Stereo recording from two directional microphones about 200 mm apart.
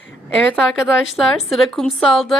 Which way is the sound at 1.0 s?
Centre (ahead or behind).